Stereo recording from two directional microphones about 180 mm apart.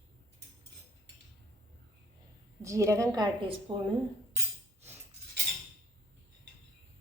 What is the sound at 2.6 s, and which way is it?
A woman's voice, 15° right (ahead or behind).